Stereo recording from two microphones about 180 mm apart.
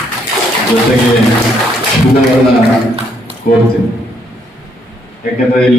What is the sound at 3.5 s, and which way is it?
Speech, 55° left (ahead or behind).